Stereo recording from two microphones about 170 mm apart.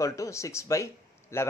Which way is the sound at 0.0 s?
20° left (ahead or behind).